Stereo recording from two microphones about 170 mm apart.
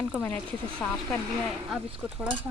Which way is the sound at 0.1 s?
10° left (ahead or behind).